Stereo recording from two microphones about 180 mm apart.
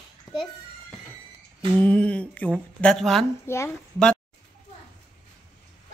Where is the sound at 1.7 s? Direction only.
5° left (ahead or behind).